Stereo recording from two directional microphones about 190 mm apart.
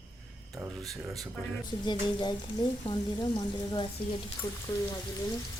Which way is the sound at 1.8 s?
25° left (ahead or behind).